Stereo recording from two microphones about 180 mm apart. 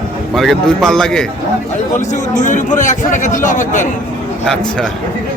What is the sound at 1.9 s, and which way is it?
A man's voice, 45° left (ahead or behind).